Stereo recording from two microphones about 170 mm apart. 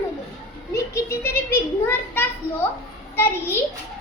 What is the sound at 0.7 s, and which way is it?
A child's voice, 15° left (ahead or behind).